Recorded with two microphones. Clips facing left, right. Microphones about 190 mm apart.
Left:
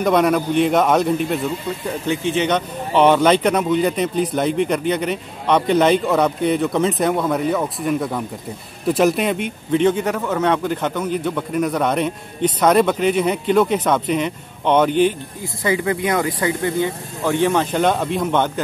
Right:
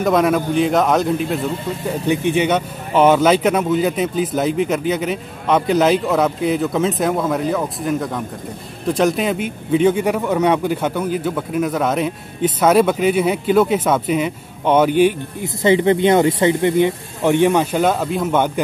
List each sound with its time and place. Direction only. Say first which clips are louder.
0.0 s a man's voice: even; centre (ahead or behind)
2.0 s a man's voice: right 3 dB; 15° right (ahead or behind)
15.4 s speech: right 6 dB; 25° right (ahead or behind); by 18.5 s 5° right (ahead or behind)